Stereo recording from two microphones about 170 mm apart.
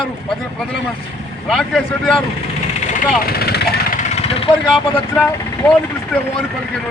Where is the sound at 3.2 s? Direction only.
65° left (ahead or behind).